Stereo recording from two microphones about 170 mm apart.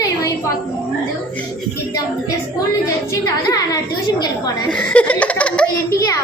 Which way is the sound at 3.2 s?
20° left (ahead or behind).